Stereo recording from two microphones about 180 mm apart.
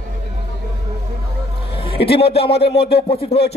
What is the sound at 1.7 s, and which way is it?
Music, 30° left (ahead or behind).